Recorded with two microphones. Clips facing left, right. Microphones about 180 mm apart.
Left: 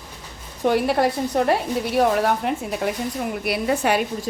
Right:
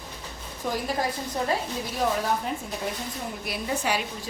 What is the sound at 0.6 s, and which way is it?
A woman's voice, 70° left (ahead or behind).